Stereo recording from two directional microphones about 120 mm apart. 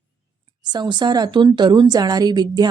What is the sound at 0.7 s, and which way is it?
Speech, 40° right (ahead or behind).